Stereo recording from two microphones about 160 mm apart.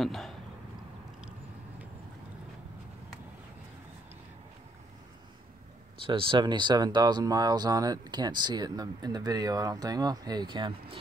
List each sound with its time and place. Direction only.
0.0 s speech: centre (ahead or behind)
6.0 s speech: 30° right (ahead or behind)